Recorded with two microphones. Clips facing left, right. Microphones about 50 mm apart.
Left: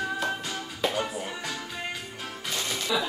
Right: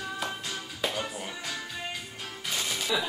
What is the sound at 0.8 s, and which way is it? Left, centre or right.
Music, centre.